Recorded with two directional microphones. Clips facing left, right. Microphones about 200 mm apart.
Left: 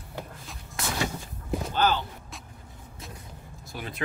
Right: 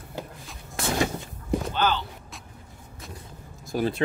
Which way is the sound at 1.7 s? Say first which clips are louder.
Left 2 dB; 45° left (ahead or behind).